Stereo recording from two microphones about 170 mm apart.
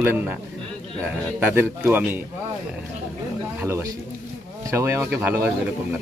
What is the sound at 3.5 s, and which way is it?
A man's voice, 15° right (ahead or behind).